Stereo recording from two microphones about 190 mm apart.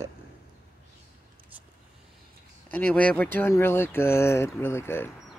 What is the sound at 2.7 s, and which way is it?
Speech, 5° left (ahead or behind).